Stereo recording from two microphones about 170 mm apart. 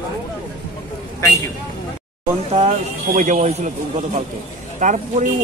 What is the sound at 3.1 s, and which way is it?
Speech, 45° right (ahead or behind).